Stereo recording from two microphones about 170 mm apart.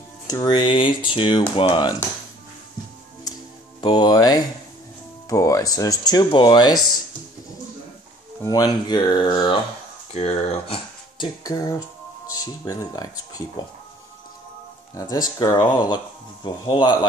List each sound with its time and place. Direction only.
0.3 s speech: 25° left (ahead or behind)
3.8 s speech: 25° left (ahead or behind)
8.4 s speech: 20° left (ahead or behind)
10.1 s speech: 40° left (ahead or behind)
11.1 s speech: 20° left (ahead or behind)
15.3 s speech: 25° left (ahead or behind)